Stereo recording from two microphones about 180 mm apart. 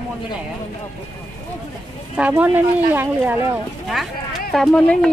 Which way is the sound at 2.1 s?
10° right (ahead or behind).